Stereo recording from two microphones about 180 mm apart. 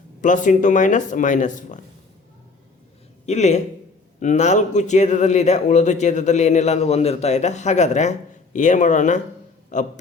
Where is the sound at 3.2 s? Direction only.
40° left (ahead or behind).